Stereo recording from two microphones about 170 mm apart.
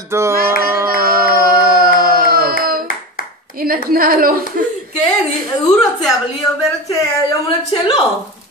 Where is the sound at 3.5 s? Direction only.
60° right (ahead or behind).